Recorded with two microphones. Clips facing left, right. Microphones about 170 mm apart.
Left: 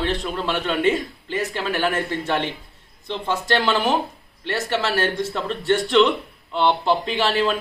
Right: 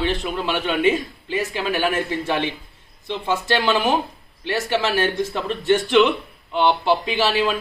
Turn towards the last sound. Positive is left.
turn(degrees=-5)  # may be behind; listen again after turning